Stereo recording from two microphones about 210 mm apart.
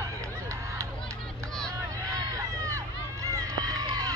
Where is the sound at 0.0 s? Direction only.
15° right (ahead or behind).